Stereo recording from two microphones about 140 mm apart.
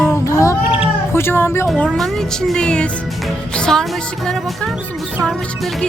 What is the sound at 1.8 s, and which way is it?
Speech, 5° left (ahead or behind).